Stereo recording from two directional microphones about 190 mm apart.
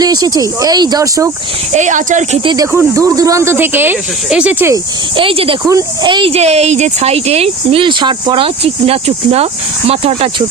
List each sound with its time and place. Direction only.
0.0 s speech: 20° right (ahead or behind)
1.7 s speech: 40° right (ahead or behind)
2.4 s speech: 25° right (ahead or behind); by 4.7 s 5° right (ahead or behind)
4.7 s speech: 25° right (ahead or behind)